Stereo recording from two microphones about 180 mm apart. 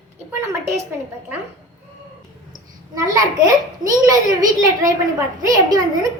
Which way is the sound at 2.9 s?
20° right (ahead or behind).